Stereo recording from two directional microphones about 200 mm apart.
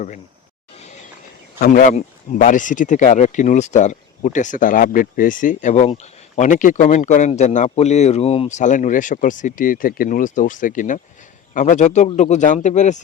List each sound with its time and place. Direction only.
1.5 s speech: 45° left (ahead or behind)